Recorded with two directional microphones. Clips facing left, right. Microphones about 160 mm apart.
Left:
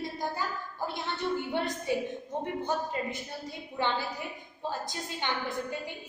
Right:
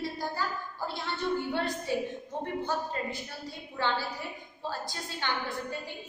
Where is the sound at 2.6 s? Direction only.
20° left (ahead or behind).